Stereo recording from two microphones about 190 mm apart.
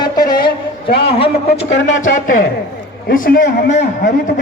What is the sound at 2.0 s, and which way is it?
A man's voice, 45° left (ahead or behind).